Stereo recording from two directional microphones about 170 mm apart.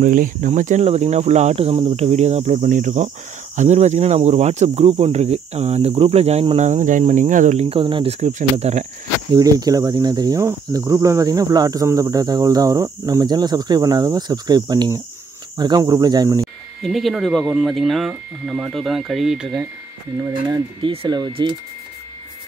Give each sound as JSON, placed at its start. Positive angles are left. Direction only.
{"t": 0.0, "sound": "speech", "side_deg": -50}
{"t": 7.8, "sound": "speech", "side_deg": -30}
{"t": 9.3, "sound": "speech", "side_deg": -20}
{"t": 16.8, "sound": "speech", "side_deg": 0}
{"t": 20.5, "sound": "speech", "side_deg": -30}